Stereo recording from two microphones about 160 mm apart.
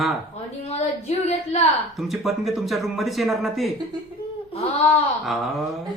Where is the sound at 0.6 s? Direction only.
40° left (ahead or behind).